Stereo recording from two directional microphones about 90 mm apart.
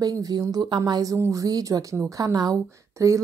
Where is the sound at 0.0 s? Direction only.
45° right (ahead or behind).